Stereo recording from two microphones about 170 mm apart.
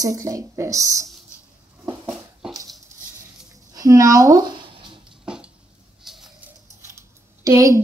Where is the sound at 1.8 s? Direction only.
5° right (ahead or behind).